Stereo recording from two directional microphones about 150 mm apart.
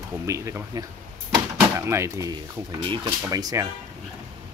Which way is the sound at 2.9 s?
30° right (ahead or behind).